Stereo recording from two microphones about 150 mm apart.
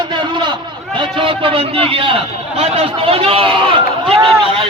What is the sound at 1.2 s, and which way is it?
A man's voice, 35° right (ahead or behind).